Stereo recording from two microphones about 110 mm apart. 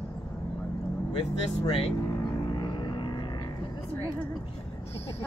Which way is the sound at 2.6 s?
45° left (ahead or behind).